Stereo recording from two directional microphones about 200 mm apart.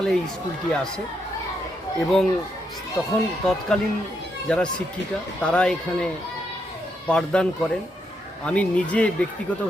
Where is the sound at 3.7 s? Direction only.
5° left (ahead or behind).